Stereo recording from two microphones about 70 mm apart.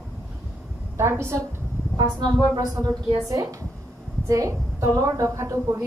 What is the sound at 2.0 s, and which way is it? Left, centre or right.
A woman's voice, right.